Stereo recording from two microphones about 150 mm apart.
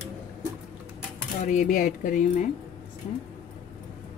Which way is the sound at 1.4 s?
55° left (ahead or behind).